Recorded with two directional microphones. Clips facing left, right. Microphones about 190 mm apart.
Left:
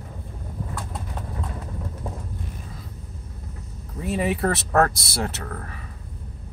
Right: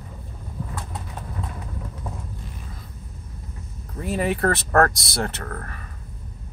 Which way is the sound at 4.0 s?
Centre (ahead or behind).